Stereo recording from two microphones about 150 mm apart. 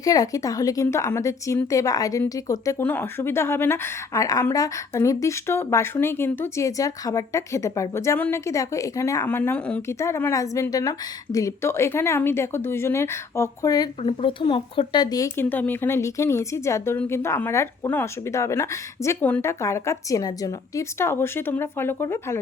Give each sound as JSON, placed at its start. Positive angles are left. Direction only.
{"t": 0.0, "sound": "speech", "side_deg": 25}
{"t": 14.0, "sound": "speech", "side_deg": 40}